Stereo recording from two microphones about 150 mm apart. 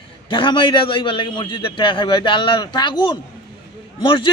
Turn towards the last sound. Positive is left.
turn(degrees=35)  # may be behind; listen again after turning